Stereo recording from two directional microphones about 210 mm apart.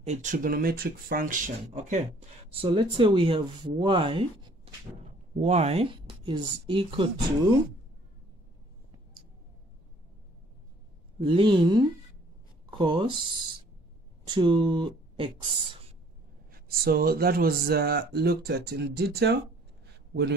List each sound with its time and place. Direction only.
0.0 s speech: 35° right (ahead or behind)
2.5 s speech: 25° right (ahead or behind)
11.2 s speech: 25° right (ahead or behind)
16.5 s speech: 45° right (ahead or behind)